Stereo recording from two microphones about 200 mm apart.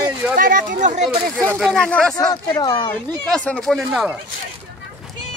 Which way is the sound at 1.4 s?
10° right (ahead or behind).